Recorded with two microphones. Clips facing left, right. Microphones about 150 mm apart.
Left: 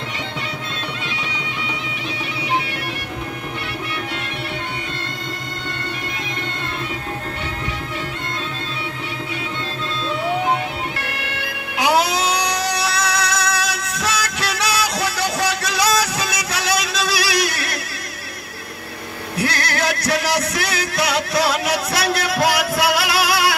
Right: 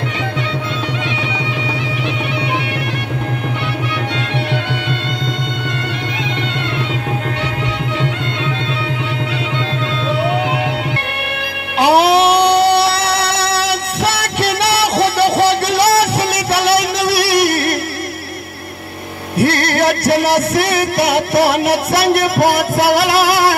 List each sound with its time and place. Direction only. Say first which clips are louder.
10.2 s music: even; 85° right
11.8 s music: right 8 dB; 65° right (ahead or behind)
19.4 s music: right 8 dB; 60° right (ahead or behind)